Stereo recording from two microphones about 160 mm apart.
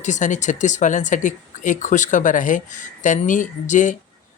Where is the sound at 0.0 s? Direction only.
50° left (ahead or behind).